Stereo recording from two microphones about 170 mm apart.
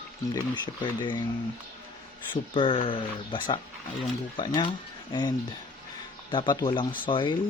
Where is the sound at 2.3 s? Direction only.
30° left (ahead or behind).